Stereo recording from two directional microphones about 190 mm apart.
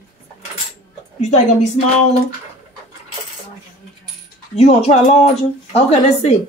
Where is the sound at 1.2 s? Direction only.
40° left (ahead or behind).